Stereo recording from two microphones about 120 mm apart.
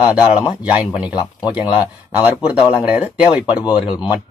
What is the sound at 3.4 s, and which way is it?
Speech, 40° left (ahead or behind).